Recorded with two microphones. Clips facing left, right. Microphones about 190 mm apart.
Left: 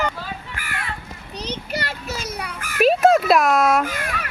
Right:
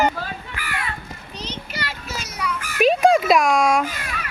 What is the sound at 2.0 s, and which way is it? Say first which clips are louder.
Children playing: even; 55° left (ahead or behind).